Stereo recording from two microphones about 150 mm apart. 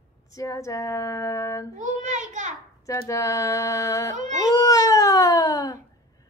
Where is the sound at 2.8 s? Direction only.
20° left (ahead or behind).